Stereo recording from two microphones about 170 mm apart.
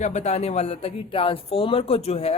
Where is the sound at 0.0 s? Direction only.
40° left (ahead or behind).